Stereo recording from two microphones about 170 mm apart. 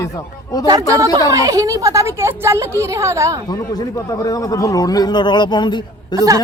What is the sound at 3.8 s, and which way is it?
Speech, 20° left (ahead or behind).